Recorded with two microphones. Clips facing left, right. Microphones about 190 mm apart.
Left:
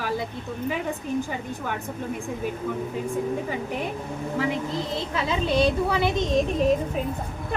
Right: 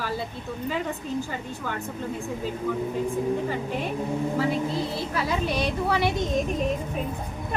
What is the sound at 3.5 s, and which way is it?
A woman's voice, 15° left (ahead or behind).